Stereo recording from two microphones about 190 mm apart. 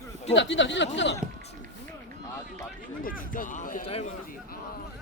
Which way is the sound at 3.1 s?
45° left (ahead or behind).